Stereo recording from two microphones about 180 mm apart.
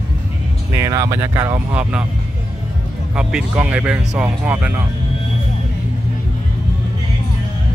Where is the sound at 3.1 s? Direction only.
5° right (ahead or behind).